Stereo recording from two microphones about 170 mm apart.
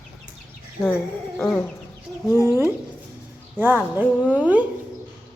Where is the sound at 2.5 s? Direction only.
10° right (ahead or behind).